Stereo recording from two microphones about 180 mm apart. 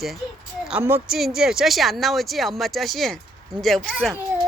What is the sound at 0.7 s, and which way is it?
Speech, 10° right (ahead or behind).